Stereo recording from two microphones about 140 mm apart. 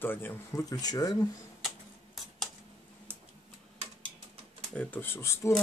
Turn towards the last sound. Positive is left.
turn(degrees=20)  # may be behind; listen again after turning